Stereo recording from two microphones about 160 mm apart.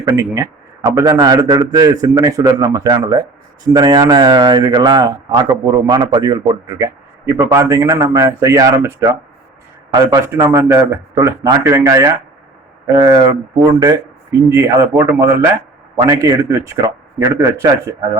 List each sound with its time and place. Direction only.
0.0 s a man's voice: 20° right (ahead or behind)